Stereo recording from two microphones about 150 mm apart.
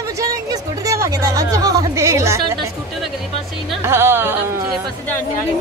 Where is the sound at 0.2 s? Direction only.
25° right (ahead or behind).